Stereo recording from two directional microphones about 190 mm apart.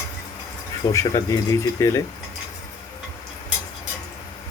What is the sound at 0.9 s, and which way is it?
Speech, 15° left (ahead or behind).